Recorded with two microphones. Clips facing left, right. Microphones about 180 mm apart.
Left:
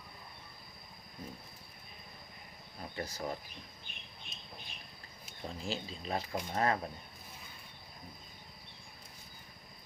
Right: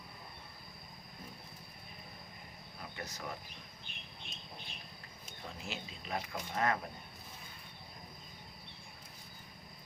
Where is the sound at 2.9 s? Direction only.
30° left (ahead or behind).